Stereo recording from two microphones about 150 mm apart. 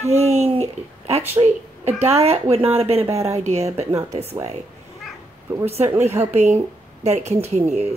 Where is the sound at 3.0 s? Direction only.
20° right (ahead or behind).